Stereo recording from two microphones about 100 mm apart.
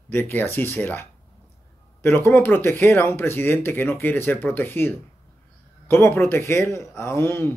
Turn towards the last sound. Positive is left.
turn(degrees=25)  # may be behind; listen again after turning